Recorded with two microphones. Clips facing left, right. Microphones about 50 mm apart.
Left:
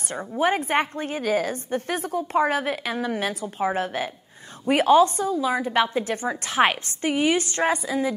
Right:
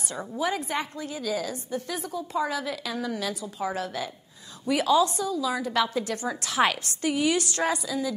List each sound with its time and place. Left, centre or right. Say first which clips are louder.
0.4 s a woman's voice: left 7 dB; left